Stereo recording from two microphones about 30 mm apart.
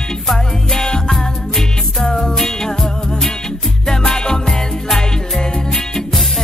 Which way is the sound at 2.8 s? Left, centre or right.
Centre.